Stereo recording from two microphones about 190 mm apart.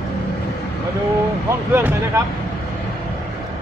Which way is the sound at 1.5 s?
10° right (ahead or behind).